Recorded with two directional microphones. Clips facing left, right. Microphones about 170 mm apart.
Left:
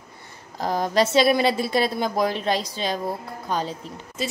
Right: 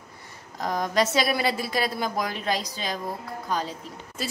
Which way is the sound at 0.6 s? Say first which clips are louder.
Left 3 dB; 30° left (ahead or behind).